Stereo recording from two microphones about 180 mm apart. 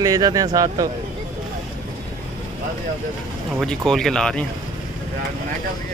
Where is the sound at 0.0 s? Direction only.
20° right (ahead or behind).